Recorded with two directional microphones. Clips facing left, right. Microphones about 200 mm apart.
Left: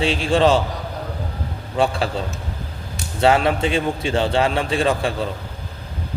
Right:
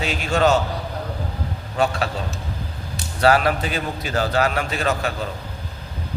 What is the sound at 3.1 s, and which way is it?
A man's voice, 25° left (ahead or behind).